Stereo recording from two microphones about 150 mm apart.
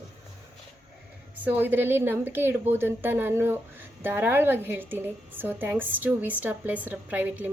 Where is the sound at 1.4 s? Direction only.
15° right (ahead or behind).